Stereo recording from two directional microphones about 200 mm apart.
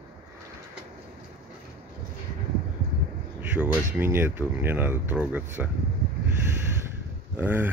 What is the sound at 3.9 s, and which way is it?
Speech, 10° right (ahead or behind).